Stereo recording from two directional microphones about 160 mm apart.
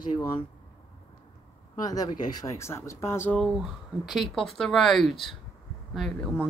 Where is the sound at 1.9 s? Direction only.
25° left (ahead or behind).